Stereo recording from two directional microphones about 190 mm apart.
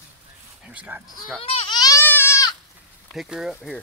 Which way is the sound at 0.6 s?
10° right (ahead or behind).